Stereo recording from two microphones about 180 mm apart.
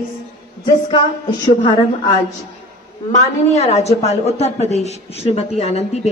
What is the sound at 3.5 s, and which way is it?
Speech, 35° left (ahead or behind).